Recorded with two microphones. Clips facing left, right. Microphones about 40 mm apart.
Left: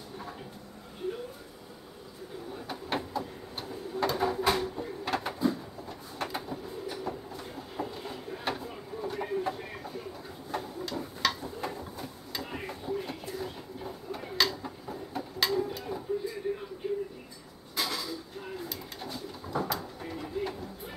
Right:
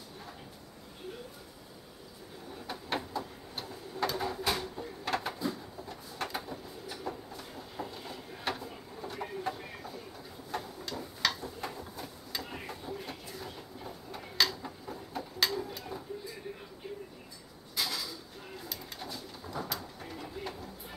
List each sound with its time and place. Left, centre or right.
2.6 s printer: centre
5.1 s a sound: centre
17.7 s bird: centre